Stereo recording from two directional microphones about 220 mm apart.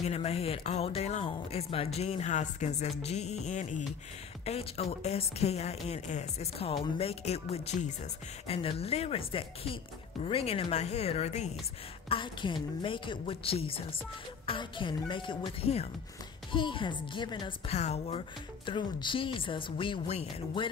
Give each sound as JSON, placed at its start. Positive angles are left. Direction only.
{"t": 0.0, "sound": "speech", "side_deg": 30}
{"t": 3.0, "sound": "music of bollywood", "side_deg": 30}
{"t": 4.5, "sound": "speech", "side_deg": 25}